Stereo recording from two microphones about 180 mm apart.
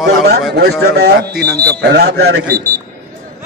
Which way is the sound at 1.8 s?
65° right (ahead or behind).